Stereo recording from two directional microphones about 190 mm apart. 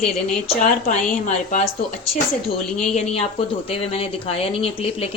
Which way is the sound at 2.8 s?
35° left (ahead or behind).